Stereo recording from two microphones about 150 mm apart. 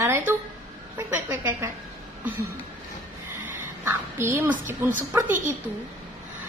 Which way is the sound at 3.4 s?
15° right (ahead or behind).